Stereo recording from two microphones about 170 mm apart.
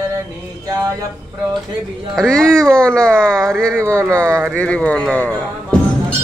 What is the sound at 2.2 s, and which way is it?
Speech, 5° left (ahead or behind).